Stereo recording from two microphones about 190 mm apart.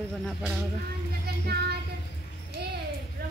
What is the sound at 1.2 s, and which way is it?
Child singing, 55° right (ahead or behind).